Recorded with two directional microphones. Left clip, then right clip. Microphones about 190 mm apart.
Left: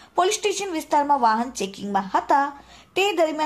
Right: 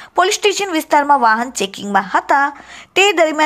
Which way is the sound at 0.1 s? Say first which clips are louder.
Right 7 dB; 15° right (ahead or behind).